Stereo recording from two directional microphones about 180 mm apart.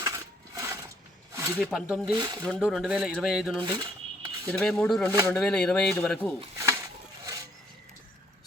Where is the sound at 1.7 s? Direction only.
5° right (ahead or behind).